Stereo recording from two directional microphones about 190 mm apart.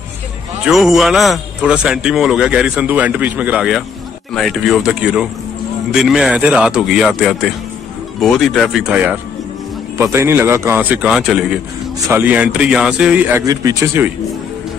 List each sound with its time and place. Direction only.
0.7 s a man's voice: centre (ahead or behind)